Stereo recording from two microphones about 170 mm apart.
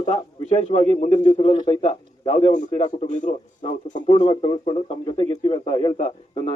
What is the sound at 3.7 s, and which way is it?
Speech, 30° left (ahead or behind).